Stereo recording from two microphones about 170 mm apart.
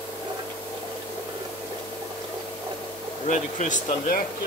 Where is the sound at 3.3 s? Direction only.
45° left (ahead or behind).